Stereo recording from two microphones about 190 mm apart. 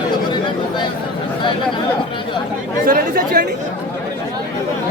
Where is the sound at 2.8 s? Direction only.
50° right (ahead or behind).